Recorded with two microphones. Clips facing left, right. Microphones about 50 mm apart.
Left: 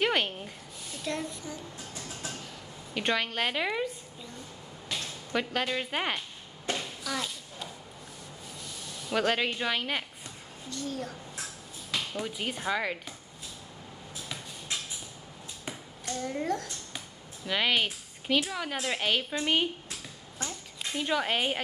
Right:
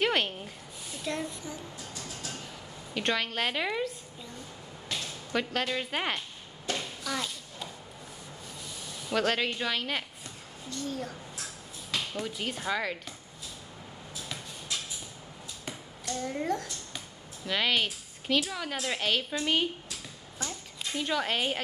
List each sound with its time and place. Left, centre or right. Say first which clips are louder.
0.0 s a sound: even; centre
0.8 s speech: even; centre
2.9 s a woman's voice: left 1 dB; centre
4.9 s a sound: even; centre
5.3 s a woman's voice: even; centre
6.8 s a sound: even; centre
8.6 s a sound: even; centre
9.1 s a woman's voice: left 1 dB; centre
10.7 s a woman's voice: even; centre
14.7 s vehicle: even; left
16.2 s a woman's voice: even; centre
17.5 s a woman's voice: left 1 dB; centre